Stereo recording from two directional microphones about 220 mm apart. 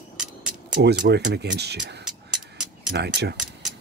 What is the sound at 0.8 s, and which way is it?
Speech, 50° right (ahead or behind).